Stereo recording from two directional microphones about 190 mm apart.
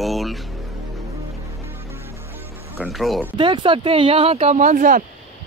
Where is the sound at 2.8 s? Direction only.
Centre (ahead or behind).